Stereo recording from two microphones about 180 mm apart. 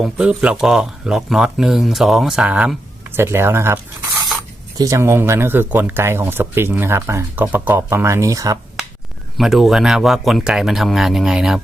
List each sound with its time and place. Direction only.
0.0 s speech: 5° right (ahead or behind)
4.8 s speech: 15° right (ahead or behind)
9.4 s speech: centre (ahead or behind)